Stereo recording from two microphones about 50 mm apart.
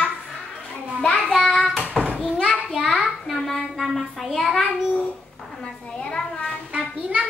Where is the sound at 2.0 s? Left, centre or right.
Centre.